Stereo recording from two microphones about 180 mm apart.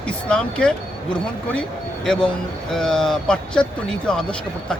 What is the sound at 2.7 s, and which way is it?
Speech, 5° left (ahead or behind).